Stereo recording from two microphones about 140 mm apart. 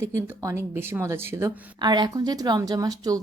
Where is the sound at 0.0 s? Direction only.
20° right (ahead or behind).